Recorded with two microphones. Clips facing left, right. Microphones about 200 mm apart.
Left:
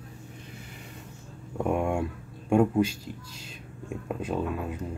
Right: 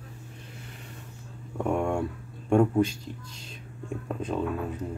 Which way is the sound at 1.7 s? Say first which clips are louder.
Even; 10° left (ahead or behind).